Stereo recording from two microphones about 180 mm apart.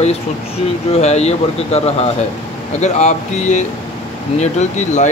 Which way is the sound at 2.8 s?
40° left (ahead or behind).